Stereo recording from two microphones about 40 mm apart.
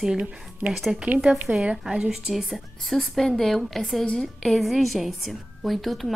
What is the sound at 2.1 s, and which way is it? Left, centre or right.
Speech, centre.